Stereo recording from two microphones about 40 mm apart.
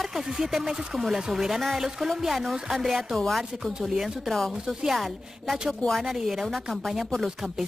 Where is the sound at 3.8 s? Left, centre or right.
Centre.